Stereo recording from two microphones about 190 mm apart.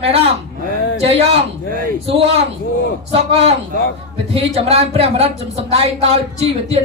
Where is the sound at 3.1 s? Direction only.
30° right (ahead or behind).